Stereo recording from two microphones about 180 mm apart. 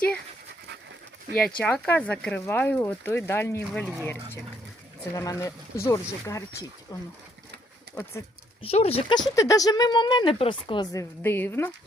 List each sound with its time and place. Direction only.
1.3 s speech: 75° right (ahead or behind)
1.6 s speech: 5° left (ahead or behind)
5.1 s speech: 15° left (ahead or behind)
8.6 s speech: 35° left (ahead or behind)
9.3 s speech: 20° left (ahead or behind)
11.2 s speech: 10° left (ahead or behind)